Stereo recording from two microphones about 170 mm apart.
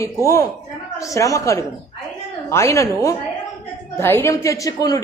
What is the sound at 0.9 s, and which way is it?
A woman's voice, 20° left (ahead or behind).